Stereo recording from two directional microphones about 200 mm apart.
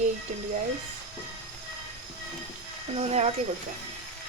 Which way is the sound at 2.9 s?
35° right (ahead or behind).